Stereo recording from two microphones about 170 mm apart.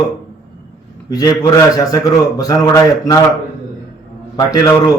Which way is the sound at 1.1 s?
20° left (ahead or behind).